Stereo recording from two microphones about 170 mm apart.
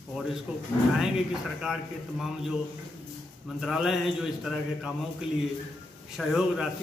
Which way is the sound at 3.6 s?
Centre (ahead or behind).